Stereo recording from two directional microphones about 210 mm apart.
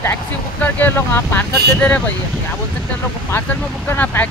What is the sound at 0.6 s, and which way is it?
Speech, 10° left (ahead or behind).